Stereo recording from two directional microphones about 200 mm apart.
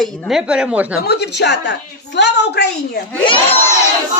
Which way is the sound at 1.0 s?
55° left (ahead or behind).